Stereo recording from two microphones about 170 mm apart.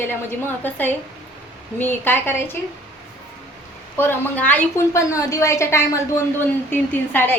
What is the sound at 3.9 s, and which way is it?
A woman's voice, 10° left (ahead or behind).